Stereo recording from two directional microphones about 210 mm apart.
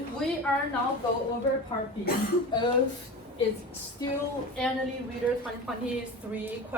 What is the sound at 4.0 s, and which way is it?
Speech, 15° left (ahead or behind).